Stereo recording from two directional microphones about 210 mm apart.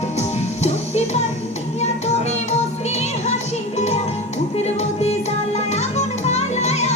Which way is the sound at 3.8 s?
30° left (ahead or behind).